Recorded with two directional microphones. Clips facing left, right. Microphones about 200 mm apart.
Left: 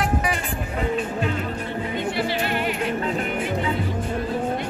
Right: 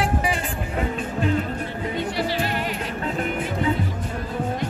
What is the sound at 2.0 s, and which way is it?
Music, 40° right (ahead or behind).